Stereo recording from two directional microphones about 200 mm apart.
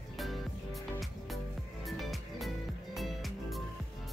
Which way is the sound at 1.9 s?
Centre (ahead or behind).